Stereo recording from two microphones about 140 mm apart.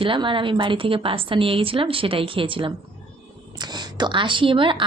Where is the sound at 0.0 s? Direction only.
35° right (ahead or behind).